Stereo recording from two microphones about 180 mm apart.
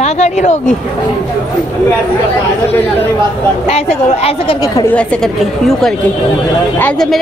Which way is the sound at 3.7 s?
35° left (ahead or behind).